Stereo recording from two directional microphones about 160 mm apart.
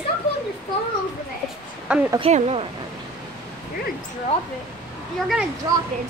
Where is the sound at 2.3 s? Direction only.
40° right (ahead or behind).